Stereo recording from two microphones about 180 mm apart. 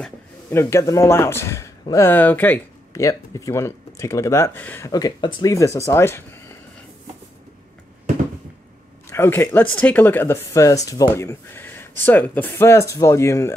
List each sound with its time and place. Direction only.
0.0 s speech: 15° left (ahead or behind)
9.1 s speech: 15° left (ahead or behind)